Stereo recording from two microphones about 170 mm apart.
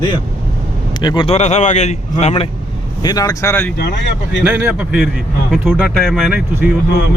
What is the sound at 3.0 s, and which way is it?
Speech, 20° left (ahead or behind).